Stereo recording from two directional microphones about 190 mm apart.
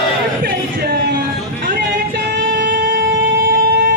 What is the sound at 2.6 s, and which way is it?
Music, 50° right (ahead or behind).